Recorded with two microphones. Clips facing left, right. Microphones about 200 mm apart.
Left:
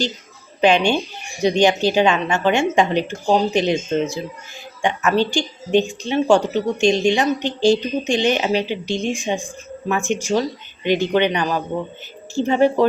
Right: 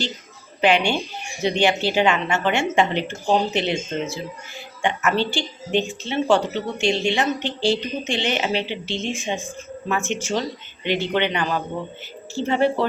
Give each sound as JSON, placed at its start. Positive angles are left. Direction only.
{"t": 0.6, "sound": "a woman's voice", "side_deg": 15}